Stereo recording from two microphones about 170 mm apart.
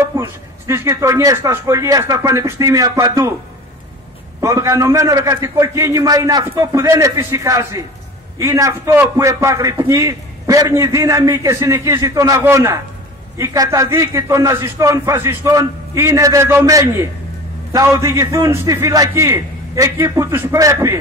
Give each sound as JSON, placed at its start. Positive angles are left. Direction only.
{"t": 0.0, "sound": "a man's voice", "side_deg": -15}
{"t": 4.4, "sound": "a man's voice", "side_deg": -20}